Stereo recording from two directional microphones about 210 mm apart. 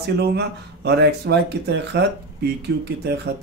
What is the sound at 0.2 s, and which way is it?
Speech, 50° right (ahead or behind).